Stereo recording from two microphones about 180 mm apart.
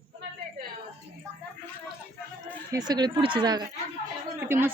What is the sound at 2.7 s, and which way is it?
Speech, 20° right (ahead or behind).